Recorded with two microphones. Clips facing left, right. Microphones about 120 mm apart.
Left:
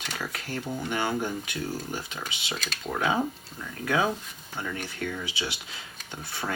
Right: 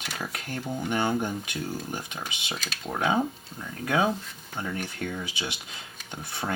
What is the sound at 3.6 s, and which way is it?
Speech, 20° right (ahead or behind).